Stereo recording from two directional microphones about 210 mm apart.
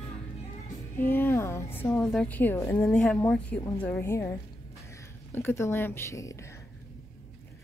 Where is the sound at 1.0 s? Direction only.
10° left (ahead or behind).